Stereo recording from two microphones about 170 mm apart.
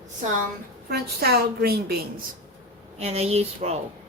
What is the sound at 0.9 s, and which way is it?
Speech, 70° right (ahead or behind).